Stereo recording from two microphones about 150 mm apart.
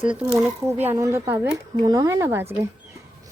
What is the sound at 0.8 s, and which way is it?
Speech, 15° right (ahead or behind).